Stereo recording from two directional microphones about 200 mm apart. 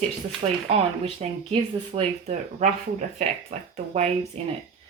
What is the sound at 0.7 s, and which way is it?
Speech, 30° right (ahead or behind).